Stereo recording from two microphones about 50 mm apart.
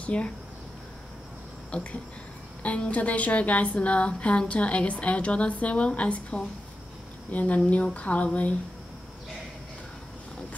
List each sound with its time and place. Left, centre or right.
0.0 s speech: left
1.7 s a woman's voice: left